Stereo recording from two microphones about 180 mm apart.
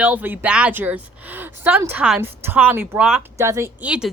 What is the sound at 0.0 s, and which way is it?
Speech, 10° right (ahead or behind).